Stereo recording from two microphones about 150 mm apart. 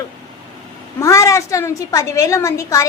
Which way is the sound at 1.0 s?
20° left (ahead or behind).